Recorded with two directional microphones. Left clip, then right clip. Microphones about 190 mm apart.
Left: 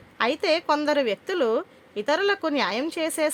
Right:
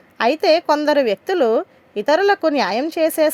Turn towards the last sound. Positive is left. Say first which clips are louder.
# right 9 dB
turn(degrees=-25)  # may be behind; listen again after turning